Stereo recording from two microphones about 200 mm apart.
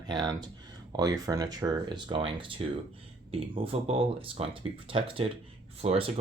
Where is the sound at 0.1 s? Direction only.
20° right (ahead or behind).